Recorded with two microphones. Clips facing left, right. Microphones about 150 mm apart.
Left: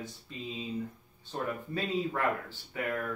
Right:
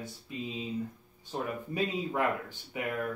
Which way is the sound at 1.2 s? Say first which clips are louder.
Even; 15° right (ahead or behind).